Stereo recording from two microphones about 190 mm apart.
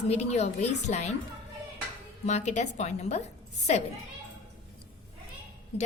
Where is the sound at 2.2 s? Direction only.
35° left (ahead or behind).